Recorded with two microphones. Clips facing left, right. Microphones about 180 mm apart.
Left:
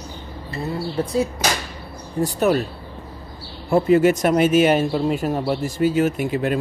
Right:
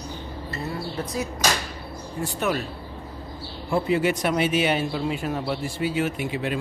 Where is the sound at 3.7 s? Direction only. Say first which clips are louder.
Left 7 dB; 45° left (ahead or behind).